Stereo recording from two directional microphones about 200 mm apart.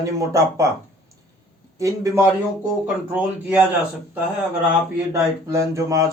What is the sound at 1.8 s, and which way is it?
Speech, 15° right (ahead or behind).